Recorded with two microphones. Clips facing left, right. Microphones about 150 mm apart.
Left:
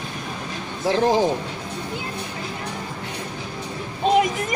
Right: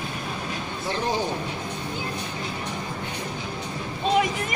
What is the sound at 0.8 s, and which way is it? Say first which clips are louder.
Speech: left 8 dB; 90° left.